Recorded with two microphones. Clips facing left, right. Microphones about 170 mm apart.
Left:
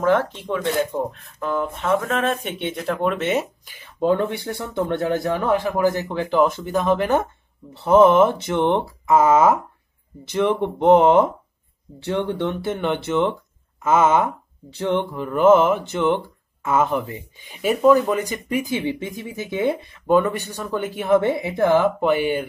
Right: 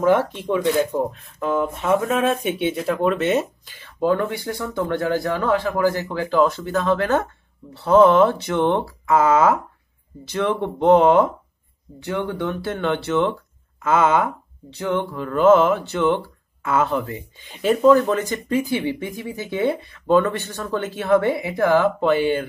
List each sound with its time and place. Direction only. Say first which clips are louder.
0.0 s speech: right 1 dB; 10° right (ahead or behind)
3.6 s speech: even; 15° left (ahead or behind)